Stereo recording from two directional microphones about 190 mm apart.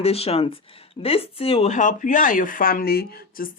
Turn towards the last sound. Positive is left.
turn(degrees=50)  # may be behind; listen again after turning